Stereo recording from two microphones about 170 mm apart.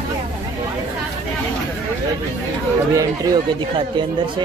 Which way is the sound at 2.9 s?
20° right (ahead or behind).